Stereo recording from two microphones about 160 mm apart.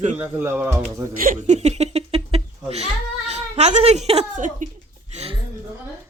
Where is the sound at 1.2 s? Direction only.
55° right (ahead or behind).